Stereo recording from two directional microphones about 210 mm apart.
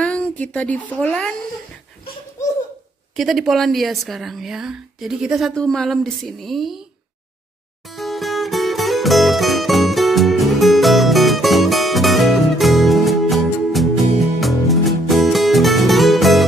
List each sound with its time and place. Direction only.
0.0 s a woman's voice: 5° left (ahead or behind)
3.2 s a woman's voice: centre (ahead or behind)
7.9 s music: centre (ahead or behind)